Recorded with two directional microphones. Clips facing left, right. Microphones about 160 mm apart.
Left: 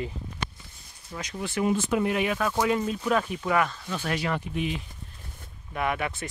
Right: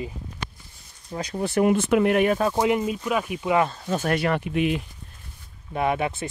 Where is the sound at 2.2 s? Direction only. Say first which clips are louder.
Right 4 dB; 30° right (ahead or behind).